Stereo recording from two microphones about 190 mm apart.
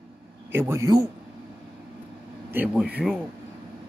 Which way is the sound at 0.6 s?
15° right (ahead or behind).